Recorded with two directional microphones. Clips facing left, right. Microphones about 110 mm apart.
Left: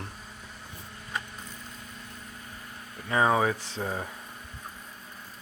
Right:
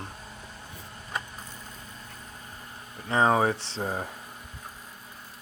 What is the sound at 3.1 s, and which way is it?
Speech, 30° right (ahead or behind).